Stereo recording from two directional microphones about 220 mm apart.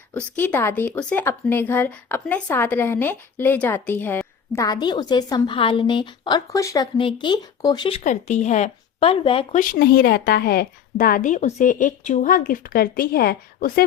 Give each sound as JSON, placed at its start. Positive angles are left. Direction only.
{"t": 0.3, "sound": "speech", "side_deg": 10}
{"t": 9.6, "sound": "a woman's voice", "side_deg": 45}